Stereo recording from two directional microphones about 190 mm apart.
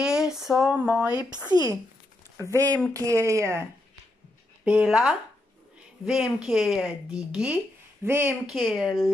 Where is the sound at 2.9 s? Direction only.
15° right (ahead or behind).